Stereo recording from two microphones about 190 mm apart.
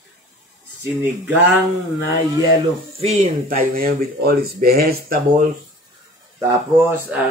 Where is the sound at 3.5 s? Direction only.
50° right (ahead or behind).